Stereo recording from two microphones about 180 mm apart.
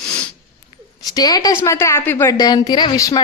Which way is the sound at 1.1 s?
20° left (ahead or behind).